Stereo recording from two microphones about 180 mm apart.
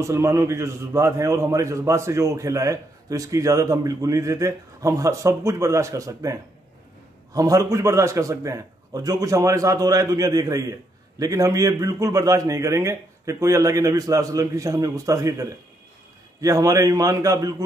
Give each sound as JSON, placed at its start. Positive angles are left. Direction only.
{"t": 0.0, "sound": "a man's voice", "side_deg": -15}